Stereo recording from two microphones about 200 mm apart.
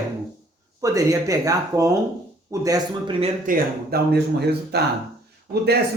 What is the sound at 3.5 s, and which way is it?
Speech, 50° right (ahead or behind).